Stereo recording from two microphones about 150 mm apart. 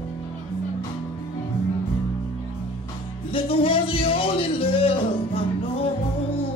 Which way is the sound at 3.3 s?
35° left (ahead or behind).